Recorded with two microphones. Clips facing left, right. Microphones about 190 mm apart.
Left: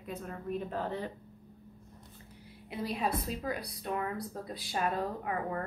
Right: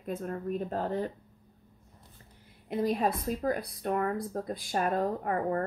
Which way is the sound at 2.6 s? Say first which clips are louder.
Right 6 dB; 45° right (ahead or behind).